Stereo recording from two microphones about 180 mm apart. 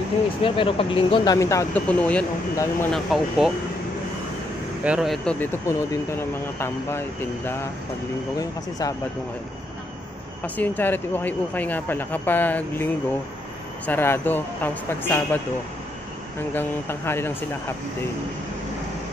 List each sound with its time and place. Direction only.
0.4 s speech: 30° left (ahead or behind); by 2.9 s 15° left (ahead or behind)
2.9 s speech: centre (ahead or behind)
4.8 s speech: 5° right (ahead or behind); by 8.9 s 20° left (ahead or behind)
10.4 s speech: 10° left (ahead or behind)